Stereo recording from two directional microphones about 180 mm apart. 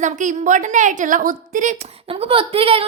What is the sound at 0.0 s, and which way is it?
A woman's voice, 45° right (ahead or behind).